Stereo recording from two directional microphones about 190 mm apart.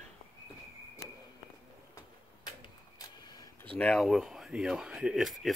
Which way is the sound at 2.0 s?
20° left (ahead or behind).